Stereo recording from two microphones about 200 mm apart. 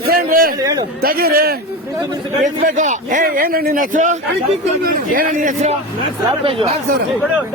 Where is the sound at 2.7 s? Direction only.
40° right (ahead or behind).